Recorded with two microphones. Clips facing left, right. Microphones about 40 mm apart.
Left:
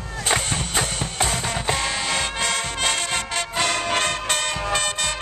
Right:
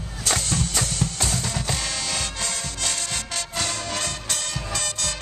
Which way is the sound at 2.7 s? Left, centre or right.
Left.